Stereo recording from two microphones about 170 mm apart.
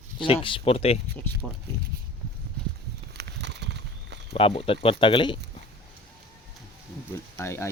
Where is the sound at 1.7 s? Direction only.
15° left (ahead or behind).